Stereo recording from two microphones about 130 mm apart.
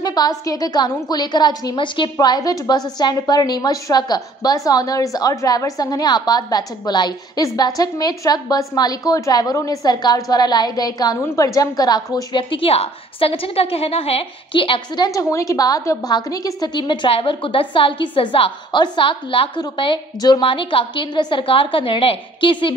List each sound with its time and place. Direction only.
0.0 s a woman's voice: 30° left (ahead or behind)
15.0 s a woman's voice: 25° left (ahead or behind); by 22.8 s 40° left (ahead or behind)